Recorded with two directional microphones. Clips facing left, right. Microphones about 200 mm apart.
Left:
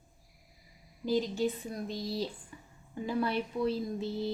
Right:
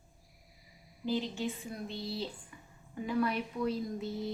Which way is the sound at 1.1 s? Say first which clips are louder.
Left 5 dB; 40° left (ahead or behind).